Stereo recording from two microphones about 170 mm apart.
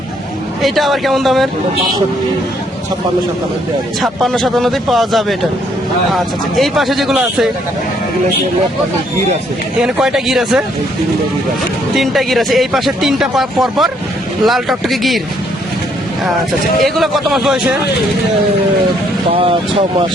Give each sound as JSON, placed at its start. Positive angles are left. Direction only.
{"t": 0.6, "sound": "speech", "side_deg": 0}
{"t": 4.0, "sound": "speech", "side_deg": 0}
{"t": 9.8, "sound": "speech", "side_deg": -5}
{"t": 11.9, "sound": "speech", "side_deg": 0}
{"t": 16.8, "sound": "speech", "side_deg": 0}
{"t": 19.3, "sound": "speech", "side_deg": -35}